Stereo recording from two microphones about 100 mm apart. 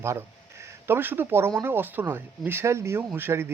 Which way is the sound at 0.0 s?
25° right (ahead or behind).